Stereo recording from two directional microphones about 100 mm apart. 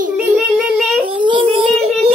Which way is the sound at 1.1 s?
55° right (ahead or behind).